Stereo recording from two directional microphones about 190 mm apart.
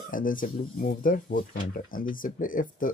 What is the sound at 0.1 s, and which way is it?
Speech, 45° left (ahead or behind).